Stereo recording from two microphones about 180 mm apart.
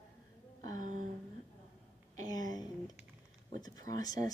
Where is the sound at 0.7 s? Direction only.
45° right (ahead or behind).